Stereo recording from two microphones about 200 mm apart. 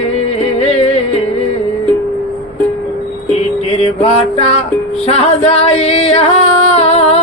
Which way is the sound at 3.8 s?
30° left (ahead or behind).